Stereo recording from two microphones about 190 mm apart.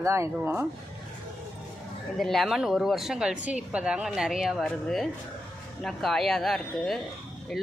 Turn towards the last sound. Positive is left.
turn(degrees=0)  # may be behind; listen again after turning